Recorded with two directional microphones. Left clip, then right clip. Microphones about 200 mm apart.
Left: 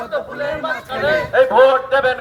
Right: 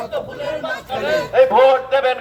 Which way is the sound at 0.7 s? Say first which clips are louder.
Left 3 dB; 5° left (ahead or behind).